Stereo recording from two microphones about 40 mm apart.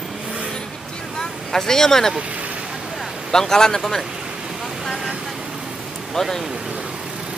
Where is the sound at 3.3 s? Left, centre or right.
Centre.